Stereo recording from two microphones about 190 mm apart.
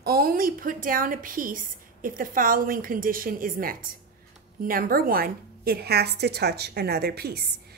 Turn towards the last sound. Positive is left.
turn(degrees=-55)  # may be behind; listen again after turning